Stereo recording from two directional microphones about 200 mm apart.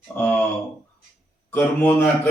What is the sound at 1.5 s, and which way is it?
Speech, 10° left (ahead or behind).